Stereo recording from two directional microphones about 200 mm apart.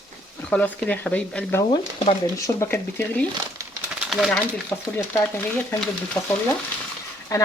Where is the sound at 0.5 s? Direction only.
5° left (ahead or behind).